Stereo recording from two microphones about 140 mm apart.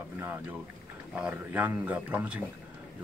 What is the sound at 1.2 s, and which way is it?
A man's voice, 10° right (ahead or behind).